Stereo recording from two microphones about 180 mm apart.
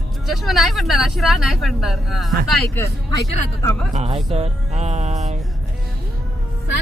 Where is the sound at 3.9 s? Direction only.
35° right (ahead or behind).